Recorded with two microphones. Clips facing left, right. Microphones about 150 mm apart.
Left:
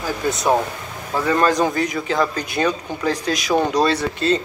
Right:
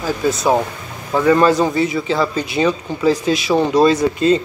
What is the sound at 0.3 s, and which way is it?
Speech, centre (ahead or behind).